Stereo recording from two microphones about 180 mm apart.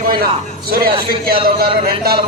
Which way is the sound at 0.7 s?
55° right (ahead or behind).